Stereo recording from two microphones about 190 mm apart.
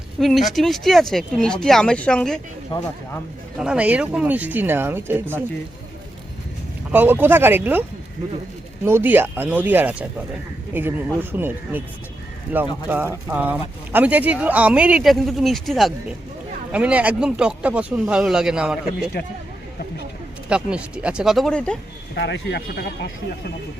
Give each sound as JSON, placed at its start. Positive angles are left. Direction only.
{"t": 0.2, "sound": "speech", "side_deg": 0}
{"t": 3.6, "sound": "speech", "side_deg": -5}
{"t": 6.9, "sound": "speech", "side_deg": -10}
{"t": 20.5, "sound": "speech", "side_deg": -5}
{"t": 22.1, "sound": "speech", "side_deg": 65}